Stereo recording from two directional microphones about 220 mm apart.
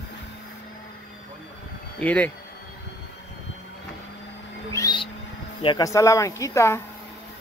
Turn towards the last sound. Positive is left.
turn(degrees=10)  # may be behind; listen again after turning